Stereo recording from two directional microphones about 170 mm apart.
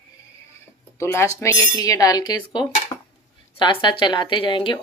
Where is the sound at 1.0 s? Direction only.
15° left (ahead or behind).